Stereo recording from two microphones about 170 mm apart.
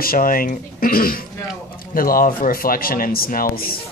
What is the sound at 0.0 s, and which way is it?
Speech, 55° left (ahead or behind).